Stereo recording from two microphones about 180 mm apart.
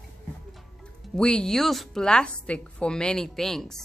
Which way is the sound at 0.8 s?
5° left (ahead or behind).